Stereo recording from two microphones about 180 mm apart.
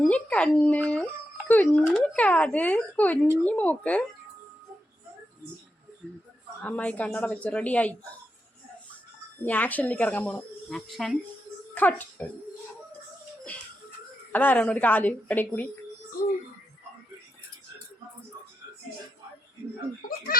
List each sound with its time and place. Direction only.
0.0 s a woman's voice: 5° left (ahead or behind)
6.6 s a woman's voice: 10° left (ahead or behind)
9.4 s a woman's voice: 10° left (ahead or behind)
14.3 s a woman's voice: 10° left (ahead or behind)
20.1 s speech: 50° left (ahead or behind)